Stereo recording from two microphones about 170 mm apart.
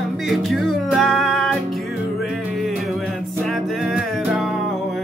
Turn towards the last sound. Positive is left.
turn(degrees=0)  # may be behind; listen again after turning